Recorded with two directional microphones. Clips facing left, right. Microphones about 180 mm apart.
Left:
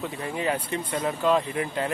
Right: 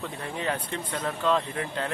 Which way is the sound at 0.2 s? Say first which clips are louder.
Left 3 dB; 5° left (ahead or behind).